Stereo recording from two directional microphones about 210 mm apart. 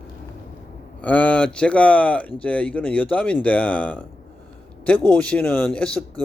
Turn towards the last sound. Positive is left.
turn(degrees=5)  # may be behind; listen again after turning